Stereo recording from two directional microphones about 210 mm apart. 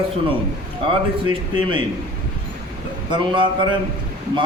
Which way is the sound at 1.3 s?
25° right (ahead or behind).